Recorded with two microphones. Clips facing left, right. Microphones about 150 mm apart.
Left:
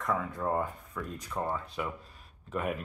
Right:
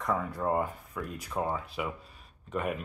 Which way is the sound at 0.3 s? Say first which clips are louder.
Right 2 dB; 10° right (ahead or behind).